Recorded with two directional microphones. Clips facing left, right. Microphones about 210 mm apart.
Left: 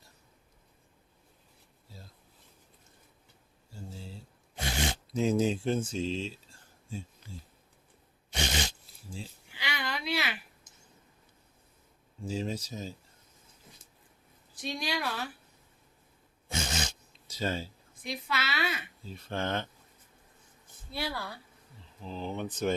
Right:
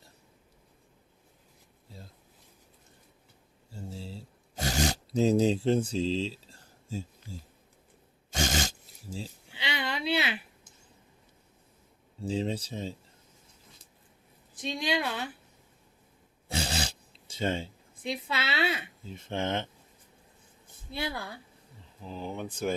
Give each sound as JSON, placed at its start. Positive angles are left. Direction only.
{"t": 3.7, "sound": "a sound", "side_deg": -30}
{"t": 8.3, "sound": "dog", "side_deg": -45}
{"t": 9.5, "sound": "a sound", "side_deg": -25}
{"t": 12.2, "sound": "speech", "side_deg": -30}
{"t": 14.8, "sound": "speech", "side_deg": -20}
{"t": 16.5, "sound": "speech", "side_deg": -35}
{"t": 20.9, "sound": "speech", "side_deg": -20}